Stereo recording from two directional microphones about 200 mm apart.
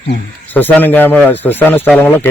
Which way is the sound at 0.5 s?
10° left (ahead or behind).